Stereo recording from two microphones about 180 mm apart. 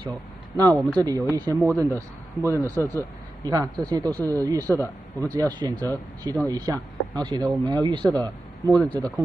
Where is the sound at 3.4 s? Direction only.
20° right (ahead or behind).